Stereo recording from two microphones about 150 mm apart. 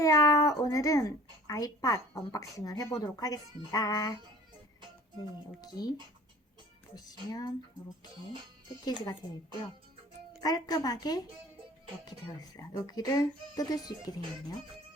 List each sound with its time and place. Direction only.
0.0 s a woman's voice: 20° left (ahead or behind)
5.5 s speech: 25° left (ahead or behind)
6.9 s speech: 25° left (ahead or behind)
8.8 s speech: 30° left (ahead or behind)
10.4 s speech: 25° left (ahead or behind)